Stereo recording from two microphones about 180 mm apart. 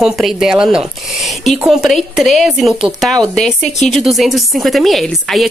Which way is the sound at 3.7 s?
40° left (ahead or behind).